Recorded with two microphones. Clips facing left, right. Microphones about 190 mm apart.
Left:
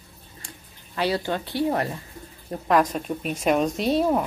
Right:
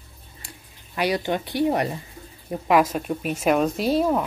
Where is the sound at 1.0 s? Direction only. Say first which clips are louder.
Right 1 dB; 15° right (ahead or behind).